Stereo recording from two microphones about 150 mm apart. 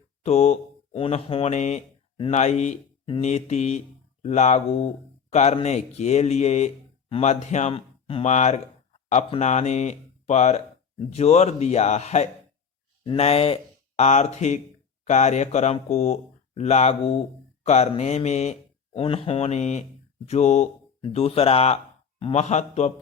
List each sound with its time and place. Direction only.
0.2 s speech: 45° left (ahead or behind)